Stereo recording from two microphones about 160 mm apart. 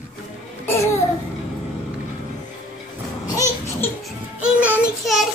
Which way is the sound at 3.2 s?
20° left (ahead or behind).